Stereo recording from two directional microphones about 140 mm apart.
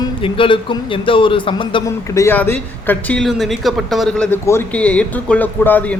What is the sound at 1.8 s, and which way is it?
A man's voice, 20° left (ahead or behind).